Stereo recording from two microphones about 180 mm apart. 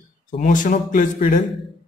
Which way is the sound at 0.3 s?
45° left (ahead or behind).